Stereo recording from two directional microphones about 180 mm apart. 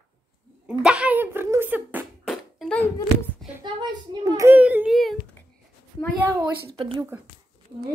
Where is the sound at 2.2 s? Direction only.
Centre (ahead or behind).